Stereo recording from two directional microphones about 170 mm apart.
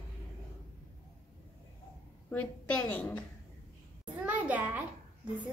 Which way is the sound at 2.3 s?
10° left (ahead or behind).